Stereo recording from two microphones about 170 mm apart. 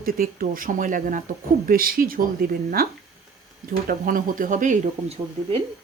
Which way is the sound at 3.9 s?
55° right (ahead or behind).